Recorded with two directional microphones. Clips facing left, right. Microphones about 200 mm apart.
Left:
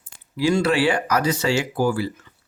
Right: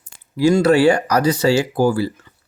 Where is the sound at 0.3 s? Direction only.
45° right (ahead or behind).